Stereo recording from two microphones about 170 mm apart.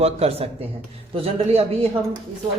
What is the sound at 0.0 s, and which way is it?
Speech, 35° right (ahead or behind).